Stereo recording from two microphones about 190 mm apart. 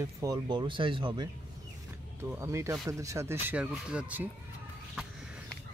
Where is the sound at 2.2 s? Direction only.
15° right (ahead or behind).